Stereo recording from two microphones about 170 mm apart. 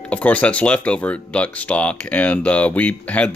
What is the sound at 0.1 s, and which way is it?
Speech, 10° left (ahead or behind).